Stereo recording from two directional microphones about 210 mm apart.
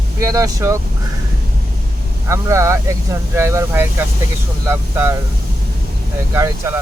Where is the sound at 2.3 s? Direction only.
15° right (ahead or behind).